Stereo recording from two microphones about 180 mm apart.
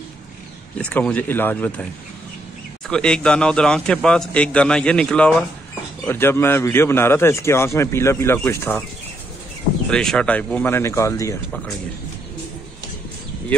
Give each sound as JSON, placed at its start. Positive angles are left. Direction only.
{"t": 0.7, "sound": "a man's voice", "side_deg": 5}
{"t": 2.9, "sound": "a man's voice", "side_deg": 5}
{"t": 9.8, "sound": "a man's voice", "side_deg": 5}